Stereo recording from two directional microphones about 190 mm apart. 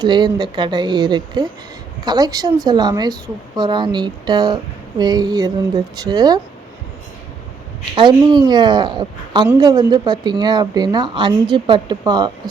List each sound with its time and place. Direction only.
0.0 s speech: 25° right (ahead or behind)
7.9 s speech: 25° right (ahead or behind)